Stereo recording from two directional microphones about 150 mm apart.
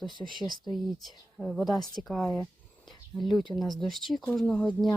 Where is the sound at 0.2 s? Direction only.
20° left (ahead or behind).